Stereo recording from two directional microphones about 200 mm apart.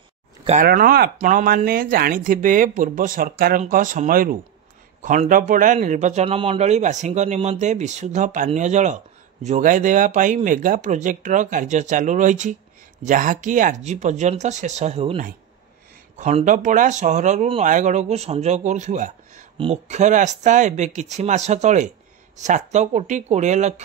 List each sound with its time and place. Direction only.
0.6 s a man's voice: 45° right (ahead or behind)